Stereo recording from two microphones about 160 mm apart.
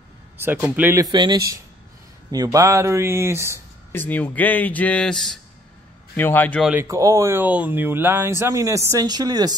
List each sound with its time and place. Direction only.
0.4 s speech: 10° right (ahead or behind)
1.0 s speech: 25° right (ahead or behind)
3.5 s speech: 10° left (ahead or behind)
6.8 s speech: 20° right (ahead or behind)